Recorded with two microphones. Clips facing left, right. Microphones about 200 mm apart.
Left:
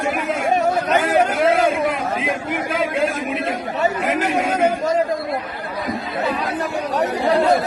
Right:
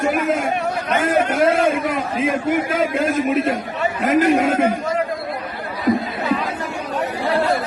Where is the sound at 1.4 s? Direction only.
45° right (ahead or behind).